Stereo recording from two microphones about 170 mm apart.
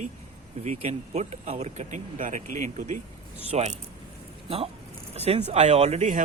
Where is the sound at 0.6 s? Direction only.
40° right (ahead or behind).